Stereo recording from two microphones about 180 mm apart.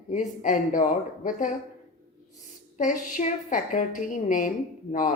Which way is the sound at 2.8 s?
45° left (ahead or behind).